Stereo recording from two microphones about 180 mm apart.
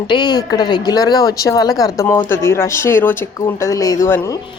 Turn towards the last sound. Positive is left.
turn(degrees=15)  # may be behind; listen again after turning